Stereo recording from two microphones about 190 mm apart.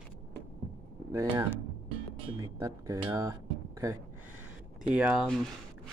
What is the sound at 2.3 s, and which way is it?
Guitar, 15° right (ahead or behind).